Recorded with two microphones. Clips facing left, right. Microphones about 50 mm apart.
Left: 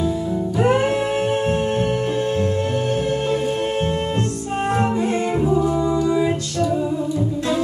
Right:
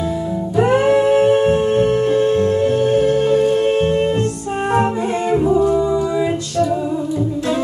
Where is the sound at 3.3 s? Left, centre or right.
Centre.